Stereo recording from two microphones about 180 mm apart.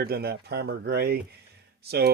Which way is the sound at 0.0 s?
60° right (ahead or behind).